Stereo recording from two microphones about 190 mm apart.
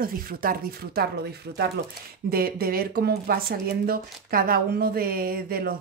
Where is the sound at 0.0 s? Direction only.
50° right (ahead or behind).